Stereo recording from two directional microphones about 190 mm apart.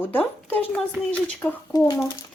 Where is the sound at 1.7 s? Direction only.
20° left (ahead or behind).